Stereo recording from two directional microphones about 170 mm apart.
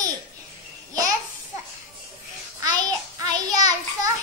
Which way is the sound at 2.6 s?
20° right (ahead or behind).